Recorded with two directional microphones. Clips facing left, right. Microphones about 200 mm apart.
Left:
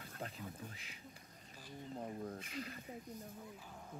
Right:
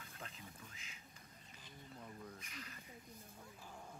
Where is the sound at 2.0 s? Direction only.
45° left (ahead or behind).